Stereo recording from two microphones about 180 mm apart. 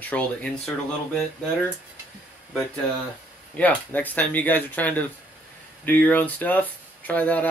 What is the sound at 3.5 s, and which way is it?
Speech, 10° left (ahead or behind).